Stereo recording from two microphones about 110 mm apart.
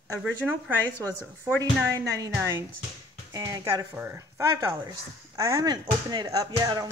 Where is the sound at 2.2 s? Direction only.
30° right (ahead or behind).